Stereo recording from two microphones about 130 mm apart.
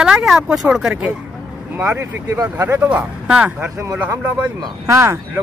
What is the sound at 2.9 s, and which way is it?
Speech, 5° right (ahead or behind).